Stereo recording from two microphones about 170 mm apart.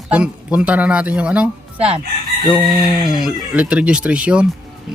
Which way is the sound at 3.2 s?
5° right (ahead or behind).